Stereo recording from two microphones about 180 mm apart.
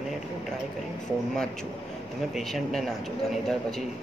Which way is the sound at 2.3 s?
Centre (ahead or behind).